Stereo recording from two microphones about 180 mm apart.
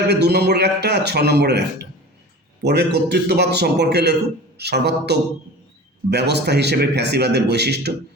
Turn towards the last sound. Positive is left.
turn(degrees=-65)  # may be behind; listen again after turning